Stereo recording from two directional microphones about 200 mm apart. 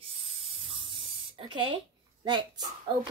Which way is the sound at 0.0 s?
25° right (ahead or behind).